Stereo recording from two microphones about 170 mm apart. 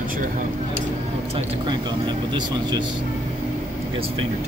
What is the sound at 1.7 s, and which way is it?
Vehicle, 25° right (ahead or behind).